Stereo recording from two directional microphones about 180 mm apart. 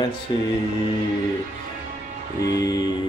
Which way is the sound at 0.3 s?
25° left (ahead or behind).